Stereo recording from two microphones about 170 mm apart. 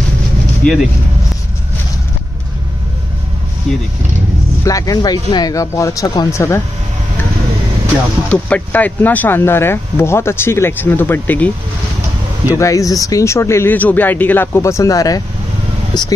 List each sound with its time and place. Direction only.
0.6 s speech: 5° left (ahead or behind)
4.6 s speech: 20° left (ahead or behind)
8.3 s speech: 5° left (ahead or behind)
15.9 s a sound: 25° left (ahead or behind)